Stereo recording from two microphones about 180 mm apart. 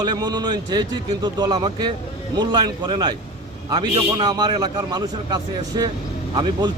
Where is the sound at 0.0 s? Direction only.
25° right (ahead or behind).